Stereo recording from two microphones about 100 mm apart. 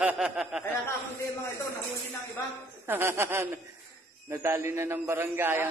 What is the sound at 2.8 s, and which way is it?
A man's voice, 25° right (ahead or behind).